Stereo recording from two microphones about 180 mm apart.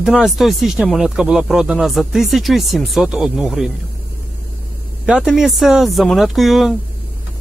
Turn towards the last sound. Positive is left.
turn(degrees=0)  # may be behind; listen again after turning